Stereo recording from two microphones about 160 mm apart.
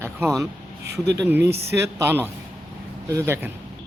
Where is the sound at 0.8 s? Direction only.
90° right.